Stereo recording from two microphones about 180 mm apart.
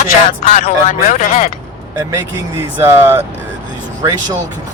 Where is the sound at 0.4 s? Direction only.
40° left (ahead or behind).